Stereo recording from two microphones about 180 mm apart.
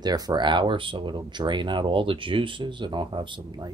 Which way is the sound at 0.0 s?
20° right (ahead or behind).